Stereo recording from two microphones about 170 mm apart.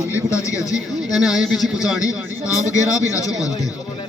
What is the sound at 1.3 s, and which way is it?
Speech, centre (ahead or behind).